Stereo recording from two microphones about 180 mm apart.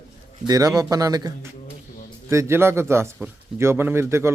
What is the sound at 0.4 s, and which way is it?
Speech, 20° right (ahead or behind).